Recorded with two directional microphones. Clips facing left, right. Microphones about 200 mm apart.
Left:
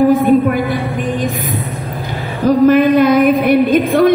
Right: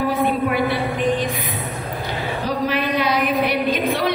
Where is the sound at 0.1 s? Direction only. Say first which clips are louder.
Left 9 dB; 45° left (ahead or behind).